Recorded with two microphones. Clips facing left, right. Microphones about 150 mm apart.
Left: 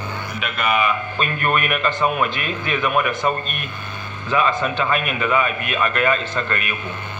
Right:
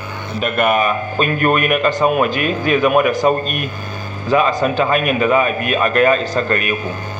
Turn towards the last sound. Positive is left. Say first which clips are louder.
# right 7 dB
turn(degrees=-35)  # may be behind; listen again after turning